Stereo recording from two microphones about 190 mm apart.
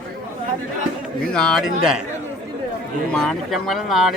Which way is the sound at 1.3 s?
5° left (ahead or behind).